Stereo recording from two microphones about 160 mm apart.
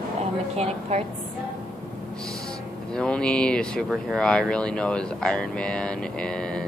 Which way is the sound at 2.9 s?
5° left (ahead or behind).